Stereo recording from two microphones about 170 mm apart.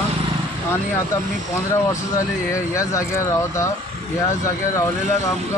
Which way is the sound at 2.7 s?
15° left (ahead or behind).